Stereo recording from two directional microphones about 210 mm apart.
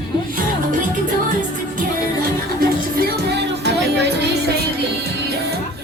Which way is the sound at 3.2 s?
55° right (ahead or behind).